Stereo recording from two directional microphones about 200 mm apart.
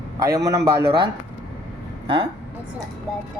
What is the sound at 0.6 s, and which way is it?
Speech, 50° right (ahead or behind).